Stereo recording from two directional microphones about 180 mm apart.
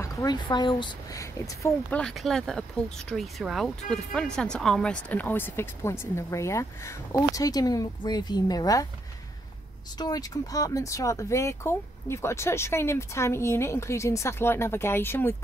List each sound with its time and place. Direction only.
0.0 s speech: 20° left (ahead or behind)
9.9 s speech: 20° left (ahead or behind)